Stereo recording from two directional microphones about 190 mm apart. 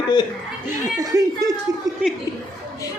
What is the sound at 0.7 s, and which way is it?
Speech, 20° right (ahead or behind).